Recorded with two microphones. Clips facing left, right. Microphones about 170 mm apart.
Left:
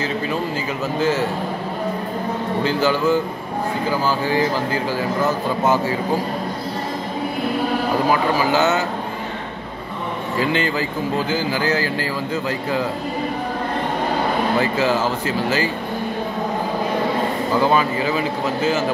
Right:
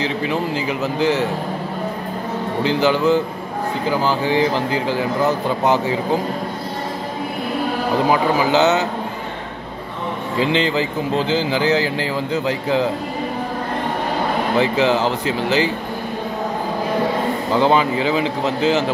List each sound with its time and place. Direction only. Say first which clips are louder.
0.3 s a man's voice: right 2 dB; 15° right (ahead or behind)
2.6 s a man's voice: right 3 dB; 20° right (ahead or behind)
8.1 s speech: right 3 dB; 20° right (ahead or behind)
10.4 s speech: right 3 dB; 20° right (ahead or behind)
14.6 s speech: right 2 dB; 20° right (ahead or behind)
17.6 s speech: right 2 dB; 20° right (ahead or behind)